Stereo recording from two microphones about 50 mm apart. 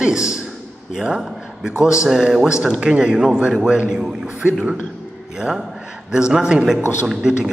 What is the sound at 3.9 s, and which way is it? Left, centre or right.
Speech, centre.